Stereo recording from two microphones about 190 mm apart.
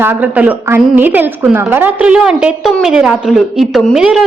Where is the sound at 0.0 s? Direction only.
10° right (ahead or behind).